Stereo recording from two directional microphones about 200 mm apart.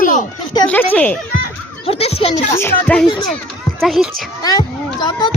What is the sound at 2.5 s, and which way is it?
A woman's voice, 10° left (ahead or behind).